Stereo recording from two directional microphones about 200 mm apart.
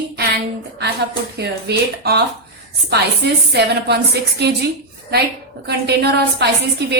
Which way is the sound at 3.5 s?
55° right (ahead or behind).